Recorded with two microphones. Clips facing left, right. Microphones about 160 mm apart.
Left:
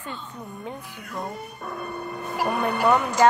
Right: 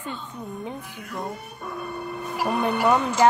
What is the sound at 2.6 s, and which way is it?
Speech, 15° right (ahead or behind).